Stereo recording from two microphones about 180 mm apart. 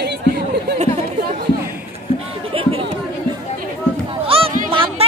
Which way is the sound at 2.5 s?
30° right (ahead or behind).